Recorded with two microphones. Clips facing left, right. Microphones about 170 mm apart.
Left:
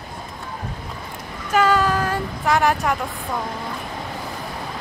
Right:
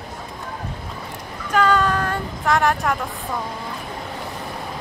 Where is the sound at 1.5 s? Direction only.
5° left (ahead or behind).